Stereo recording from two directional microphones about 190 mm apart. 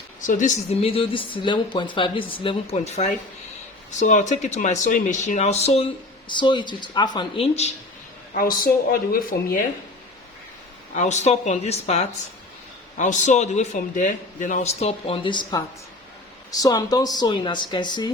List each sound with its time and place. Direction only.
0.2 s speech: 40° left (ahead or behind)
8.3 s speech: 50° left (ahead or behind)
10.9 s speech: 35° left (ahead or behind)